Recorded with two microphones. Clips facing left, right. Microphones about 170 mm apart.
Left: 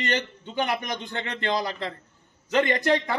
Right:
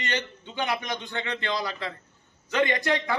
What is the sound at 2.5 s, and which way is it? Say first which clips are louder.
Speech: left 3 dB; 40° left (ahead or behind).